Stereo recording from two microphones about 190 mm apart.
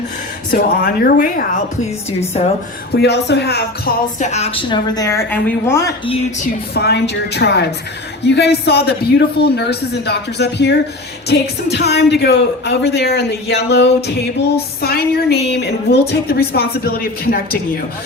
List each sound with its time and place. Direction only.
0.5 s speech: 45° left (ahead or behind)
2.9 s a woman's voice: 60° left (ahead or behind)
4.2 s a woman's voice: 35° left (ahead or behind)
5.0 s a woman's voice: 10° left (ahead or behind)
6.1 s a woman's voice: 30° left (ahead or behind)
6.7 s a woman's voice: 60° left (ahead or behind)